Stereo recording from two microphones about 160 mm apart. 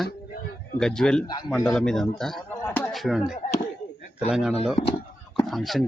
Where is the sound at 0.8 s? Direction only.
5° left (ahead or behind).